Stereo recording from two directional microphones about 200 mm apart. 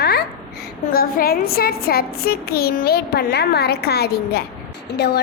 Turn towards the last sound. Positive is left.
turn(degrees=55)  # may be behind; listen again after turning